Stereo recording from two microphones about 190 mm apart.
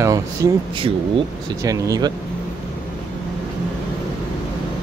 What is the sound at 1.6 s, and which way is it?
Speech, 20° right (ahead or behind).